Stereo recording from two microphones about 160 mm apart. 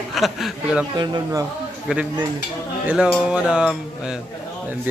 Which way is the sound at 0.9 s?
25° right (ahead or behind).